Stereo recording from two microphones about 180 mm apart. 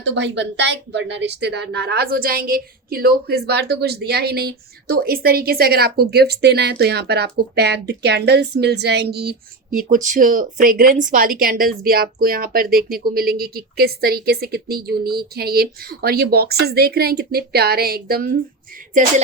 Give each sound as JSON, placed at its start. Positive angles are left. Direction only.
{"t": 0.0, "sound": "speech", "side_deg": -80}
{"t": 9.7, "sound": "speech", "side_deg": -45}